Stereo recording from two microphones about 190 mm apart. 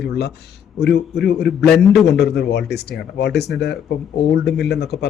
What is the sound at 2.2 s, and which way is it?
Speech, 60° left (ahead or behind).